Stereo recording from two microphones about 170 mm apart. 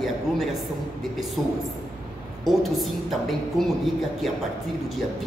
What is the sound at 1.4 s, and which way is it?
Speech, 25° right (ahead or behind).